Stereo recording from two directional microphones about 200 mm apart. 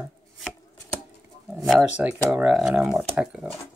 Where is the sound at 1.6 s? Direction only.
Centre (ahead or behind).